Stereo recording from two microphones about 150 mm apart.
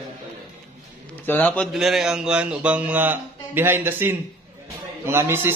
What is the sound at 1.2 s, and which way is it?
Speech, 10° left (ahead or behind).